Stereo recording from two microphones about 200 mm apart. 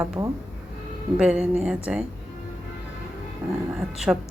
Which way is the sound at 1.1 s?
5° right (ahead or behind).